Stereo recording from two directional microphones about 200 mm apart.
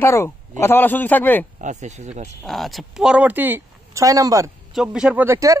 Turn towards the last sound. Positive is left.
turn(degrees=-15)  # may be behind; listen again after turning